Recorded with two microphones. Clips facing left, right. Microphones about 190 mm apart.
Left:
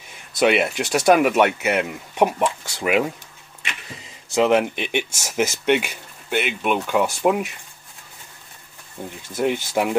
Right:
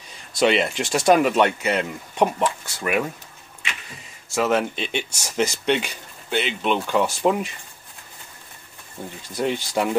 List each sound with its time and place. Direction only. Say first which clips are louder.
0.4 s speech: left 1 dB; 5° left (ahead or behind)
4.3 s speech: left 4 dB; 15° left (ahead or behind)
9.3 s speech: left 2 dB; 5° left (ahead or behind)